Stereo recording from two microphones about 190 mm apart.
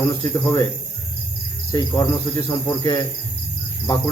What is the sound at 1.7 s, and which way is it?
Cricket, 20° left (ahead or behind).